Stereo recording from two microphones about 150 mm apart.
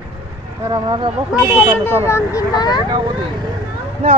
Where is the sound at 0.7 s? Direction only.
30° right (ahead or behind).